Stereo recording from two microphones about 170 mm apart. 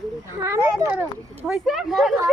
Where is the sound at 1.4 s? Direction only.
Centre (ahead or behind).